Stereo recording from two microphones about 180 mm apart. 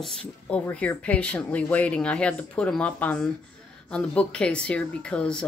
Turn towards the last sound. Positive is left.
turn(degrees=5)  # may be behind; listen again after turning